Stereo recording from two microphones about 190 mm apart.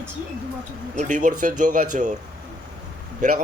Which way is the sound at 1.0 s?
40° right (ahead or behind).